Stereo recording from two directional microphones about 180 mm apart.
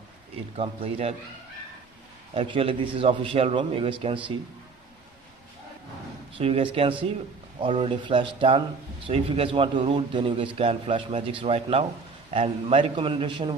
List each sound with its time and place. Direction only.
0.5 s a man's voice: 35° right (ahead or behind)
2.3 s a man's voice: 30° right (ahead or behind)
6.3 s a man's voice: 30° right (ahead or behind)